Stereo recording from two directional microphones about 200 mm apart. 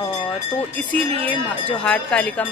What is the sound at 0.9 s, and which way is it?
Speech, 10° left (ahead or behind).